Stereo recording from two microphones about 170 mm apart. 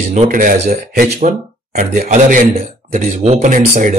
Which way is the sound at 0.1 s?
50° right (ahead or behind).